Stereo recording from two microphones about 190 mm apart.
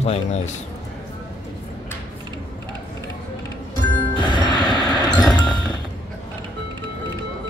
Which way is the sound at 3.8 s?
25° left (ahead or behind).